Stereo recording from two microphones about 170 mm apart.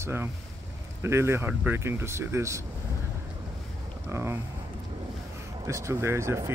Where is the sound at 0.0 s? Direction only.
15° right (ahead or behind).